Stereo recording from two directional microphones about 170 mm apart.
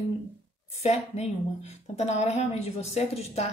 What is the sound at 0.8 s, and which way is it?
A woman's voice, 40° left (ahead or behind).